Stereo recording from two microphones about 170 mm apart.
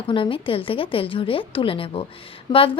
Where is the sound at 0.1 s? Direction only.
30° left (ahead or behind).